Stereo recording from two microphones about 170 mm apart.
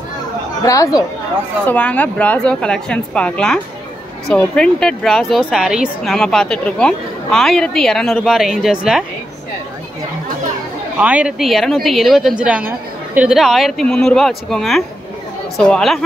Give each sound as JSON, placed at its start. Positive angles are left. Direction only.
{"t": 0.7, "sound": "speech", "side_deg": 20}
{"t": 1.7, "sound": "a woman's voice", "side_deg": 10}
{"t": 11.0, "sound": "a woman's voice", "side_deg": -10}